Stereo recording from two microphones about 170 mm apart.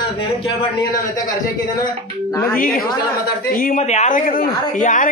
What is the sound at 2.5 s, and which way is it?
A man's voice, 55° left (ahead or behind).